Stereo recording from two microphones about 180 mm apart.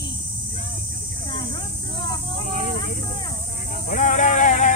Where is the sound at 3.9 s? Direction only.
45° left (ahead or behind).